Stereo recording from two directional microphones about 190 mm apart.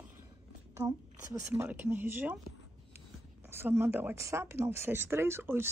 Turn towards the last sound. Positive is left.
turn(degrees=-10)  # may be behind; listen again after turning